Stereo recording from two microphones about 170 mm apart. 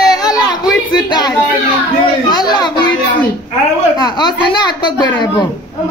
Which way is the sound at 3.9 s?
25° left (ahead or behind).